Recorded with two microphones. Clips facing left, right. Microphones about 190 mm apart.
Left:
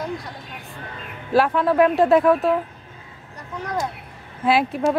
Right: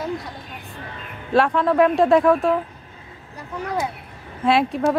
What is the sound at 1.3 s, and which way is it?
Speech, 5° left (ahead or behind).